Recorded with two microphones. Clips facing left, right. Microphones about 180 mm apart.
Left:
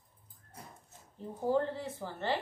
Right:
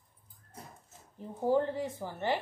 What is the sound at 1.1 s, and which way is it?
Speech, 15° right (ahead or behind).